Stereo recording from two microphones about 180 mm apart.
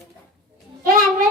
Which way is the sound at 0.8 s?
50° right (ahead or behind).